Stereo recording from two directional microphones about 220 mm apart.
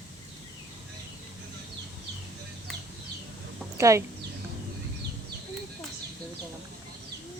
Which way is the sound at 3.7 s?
15° right (ahead or behind).